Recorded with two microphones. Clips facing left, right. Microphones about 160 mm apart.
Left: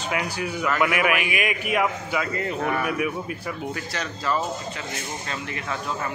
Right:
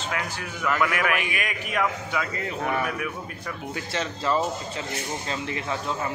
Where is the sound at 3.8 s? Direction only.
25° right (ahead or behind).